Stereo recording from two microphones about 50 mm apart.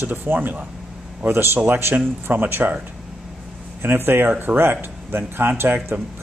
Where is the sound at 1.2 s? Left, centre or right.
Right.